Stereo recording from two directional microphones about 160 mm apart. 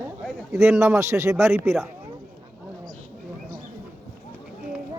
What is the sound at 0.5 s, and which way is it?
A man's voice, 15° right (ahead or behind).